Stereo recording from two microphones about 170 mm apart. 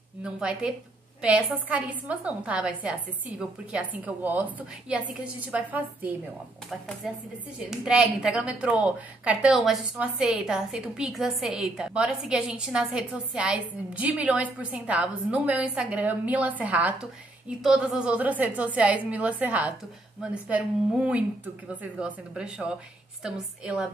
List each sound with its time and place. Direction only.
0.2 s a woman's voice: 5° right (ahead or behind)
7.5 s a woman's voice: 5° right (ahead or behind)